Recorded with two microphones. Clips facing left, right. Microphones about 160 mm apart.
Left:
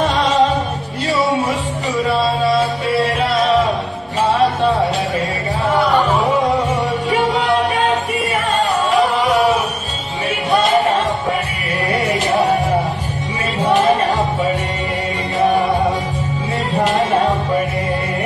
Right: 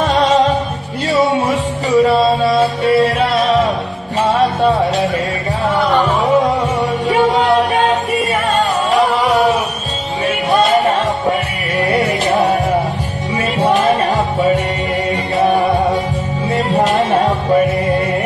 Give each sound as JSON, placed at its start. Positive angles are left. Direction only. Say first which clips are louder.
{"t": 0.1, "sound": "music", "louder": "right 4 dB", "side_deg": -35}
{"t": 1.9, "sound": "music", "louder": "right 6 dB", "side_deg": -40}
{"t": 7.1, "sound": "music", "louder": "right 5 dB", "side_deg": -40}
{"t": 11.9, "sound": "music", "louder": "right 2 dB", "side_deg": -40}
{"t": 13.6, "sound": "music", "louder": "even", "side_deg": -40}
{"t": 16.5, "sound": "music", "louder": "right 3 dB", "side_deg": -40}